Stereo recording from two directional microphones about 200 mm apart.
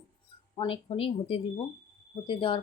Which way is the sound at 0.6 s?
25° left (ahead or behind).